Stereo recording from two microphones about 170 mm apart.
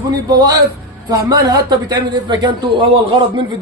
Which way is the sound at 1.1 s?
20° right (ahead or behind).